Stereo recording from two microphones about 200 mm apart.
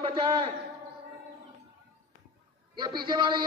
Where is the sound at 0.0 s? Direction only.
25° right (ahead or behind).